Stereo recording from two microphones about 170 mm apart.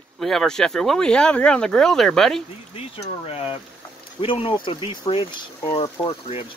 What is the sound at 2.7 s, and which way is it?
Speech, 35° left (ahead or behind).